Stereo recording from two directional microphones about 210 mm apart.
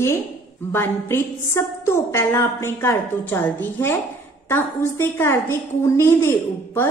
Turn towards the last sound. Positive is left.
turn(degrees=10)  # may be behind; listen again after turning